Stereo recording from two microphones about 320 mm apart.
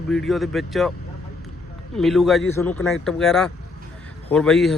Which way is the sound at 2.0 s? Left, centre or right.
Centre.